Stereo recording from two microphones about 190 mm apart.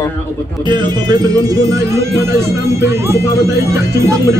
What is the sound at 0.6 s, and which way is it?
Speech, 20° right (ahead or behind).